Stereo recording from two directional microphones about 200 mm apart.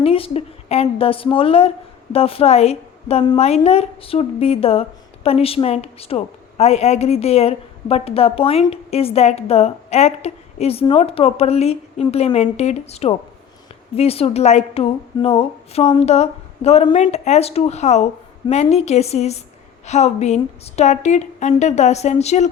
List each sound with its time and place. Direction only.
0.0 s a woman's voice: 30° left (ahead or behind)